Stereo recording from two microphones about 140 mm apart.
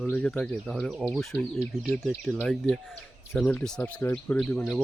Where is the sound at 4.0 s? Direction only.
15° left (ahead or behind).